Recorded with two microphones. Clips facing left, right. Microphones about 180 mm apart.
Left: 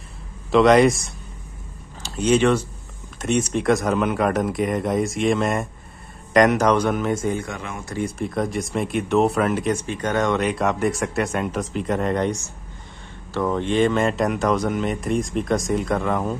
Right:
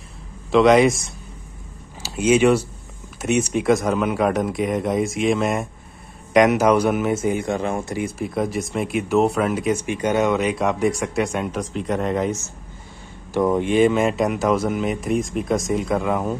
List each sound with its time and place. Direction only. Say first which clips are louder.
0.5 s speech: even; centre (ahead or behind)
7.4 s speech: right 9 dB; 30° right (ahead or behind)
7.8 s speech: right 1 dB; 10° right (ahead or behind)
9.8 s speech: right 2 dB; 10° right (ahead or behind)
13.3 s speech: right 3 dB; 15° right (ahead or behind)